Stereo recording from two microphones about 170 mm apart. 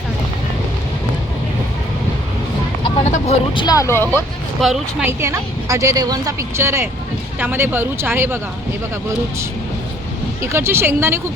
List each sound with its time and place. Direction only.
2.8 s speech: 40° left (ahead or behind); by 4.2 s 15° left (ahead or behind)
4.6 s speech: centre (ahead or behind)
5.0 s a woman's voice: 15° right (ahead or behind)
10.4 s a woman's voice: 15° right (ahead or behind)